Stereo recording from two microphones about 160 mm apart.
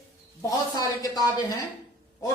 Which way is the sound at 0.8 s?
25° left (ahead or behind).